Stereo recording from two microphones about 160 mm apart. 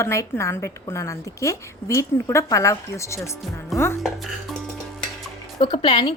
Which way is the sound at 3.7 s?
Centre (ahead or behind).